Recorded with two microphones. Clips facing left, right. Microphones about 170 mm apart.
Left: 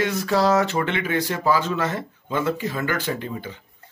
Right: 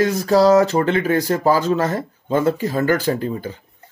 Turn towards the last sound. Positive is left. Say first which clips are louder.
# right 6 dB
turn(degrees=-40)  # may be behind; listen again after turning